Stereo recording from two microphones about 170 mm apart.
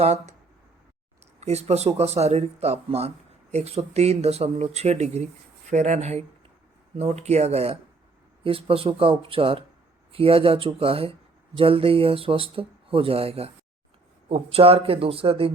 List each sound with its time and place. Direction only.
0.0 s speech: 40° right (ahead or behind)
1.4 s speech: 40° right (ahead or behind)